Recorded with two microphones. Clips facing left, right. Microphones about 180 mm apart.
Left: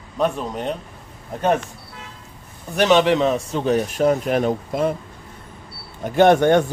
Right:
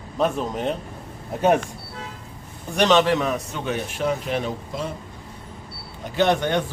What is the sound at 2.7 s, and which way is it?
Speech, 10° left (ahead or behind).